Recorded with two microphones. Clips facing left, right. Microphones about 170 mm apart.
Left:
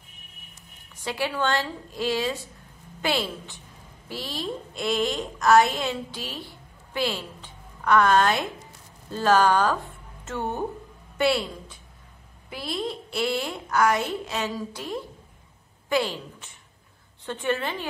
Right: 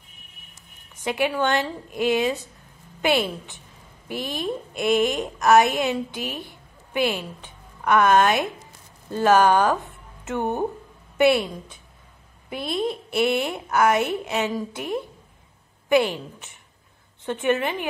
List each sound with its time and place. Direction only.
1.0 s a woman's voice: 20° right (ahead or behind)